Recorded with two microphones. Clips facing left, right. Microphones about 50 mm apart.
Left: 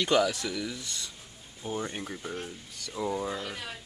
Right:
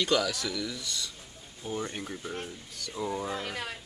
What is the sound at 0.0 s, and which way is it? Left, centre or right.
Speech, left.